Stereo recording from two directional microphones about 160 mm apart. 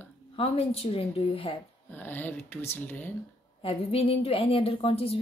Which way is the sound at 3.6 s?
35° left (ahead or behind).